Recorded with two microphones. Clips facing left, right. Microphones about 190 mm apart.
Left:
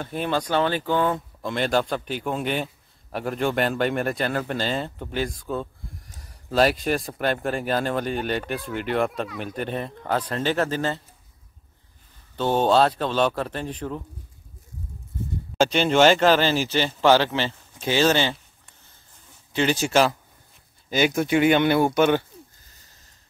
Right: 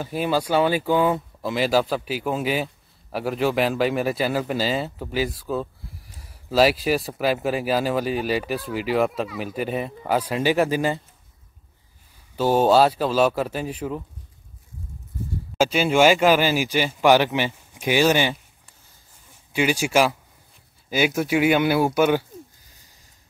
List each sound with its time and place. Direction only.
0.0 s speech: 5° right (ahead or behind)
12.4 s speech: 5° right (ahead or behind)
15.5 s speech: 5° right (ahead or behind)
19.5 s speech: 10° right (ahead or behind)